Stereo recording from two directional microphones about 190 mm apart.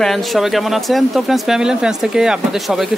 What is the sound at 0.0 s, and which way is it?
Speech, centre (ahead or behind).